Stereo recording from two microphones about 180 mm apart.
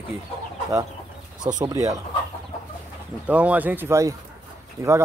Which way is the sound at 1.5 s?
20° right (ahead or behind).